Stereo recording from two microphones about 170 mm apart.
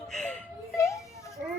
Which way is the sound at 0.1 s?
5° left (ahead or behind).